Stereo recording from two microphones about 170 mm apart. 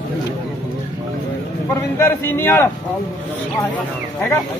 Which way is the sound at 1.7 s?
15° left (ahead or behind).